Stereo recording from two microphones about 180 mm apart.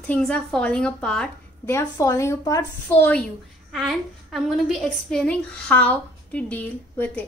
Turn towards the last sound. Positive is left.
turn(degrees=10)  # may be behind; listen again after turning